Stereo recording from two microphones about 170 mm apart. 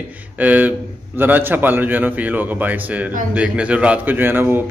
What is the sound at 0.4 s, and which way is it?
A man's voice, 10° right (ahead or behind).